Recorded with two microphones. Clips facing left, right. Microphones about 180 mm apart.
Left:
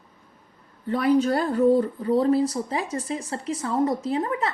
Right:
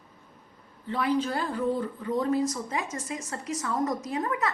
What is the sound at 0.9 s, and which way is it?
Speech, 45° left (ahead or behind).